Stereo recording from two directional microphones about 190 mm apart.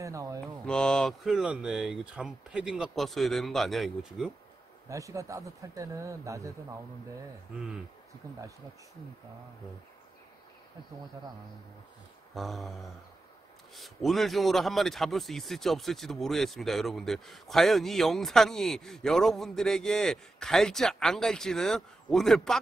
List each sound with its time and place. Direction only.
0.0 s a sound: 15° right (ahead or behind)
0.7 s a man's voice: 5° left (ahead or behind)
4.8 s speech: 15° right (ahead or behind)
12.4 s a man's voice: centre (ahead or behind)
13.7 s a man's voice: centre (ahead or behind)